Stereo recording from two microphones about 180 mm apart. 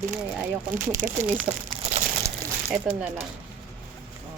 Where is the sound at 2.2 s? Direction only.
15° right (ahead or behind).